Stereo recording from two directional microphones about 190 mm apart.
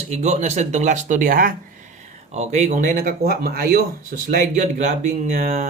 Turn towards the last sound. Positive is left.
turn(degrees=-40)  # may be behind; listen again after turning